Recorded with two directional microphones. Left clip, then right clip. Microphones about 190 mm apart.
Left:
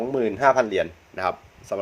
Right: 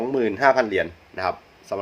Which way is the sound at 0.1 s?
10° left (ahead or behind).